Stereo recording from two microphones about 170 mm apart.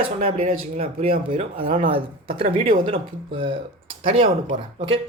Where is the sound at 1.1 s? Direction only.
35° right (ahead or behind).